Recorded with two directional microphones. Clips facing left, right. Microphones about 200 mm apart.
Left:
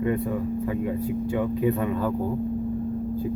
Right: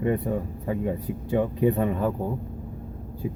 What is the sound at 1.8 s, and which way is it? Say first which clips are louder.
Speech: right 1 dB; 25° right (ahead or behind).